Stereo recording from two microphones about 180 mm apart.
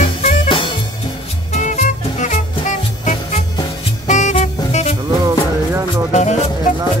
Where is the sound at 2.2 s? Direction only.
40° left (ahead or behind).